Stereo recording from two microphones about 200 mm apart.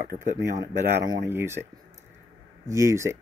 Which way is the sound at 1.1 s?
10° right (ahead or behind).